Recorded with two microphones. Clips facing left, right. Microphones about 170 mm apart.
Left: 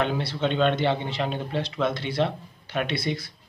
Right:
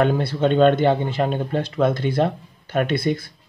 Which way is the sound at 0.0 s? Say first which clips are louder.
Right 7 dB; 50° right (ahead or behind).